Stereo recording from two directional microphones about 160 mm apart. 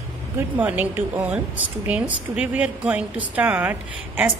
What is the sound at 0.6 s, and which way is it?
A woman's voice, 10° right (ahead or behind).